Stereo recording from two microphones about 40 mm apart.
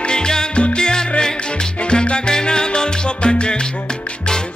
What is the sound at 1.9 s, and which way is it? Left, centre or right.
Salsa music, left.